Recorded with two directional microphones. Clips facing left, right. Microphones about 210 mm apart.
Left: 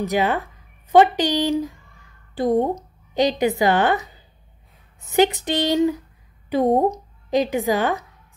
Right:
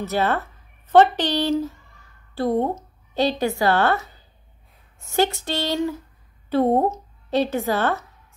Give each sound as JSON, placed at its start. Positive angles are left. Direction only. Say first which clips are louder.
{"t": 0.0, "sound": "a woman's voice", "louder": "left 2 dB", "side_deg": 15}
{"t": 5.1, "sound": "a woman's voice", "louder": "left 4 dB", "side_deg": 20}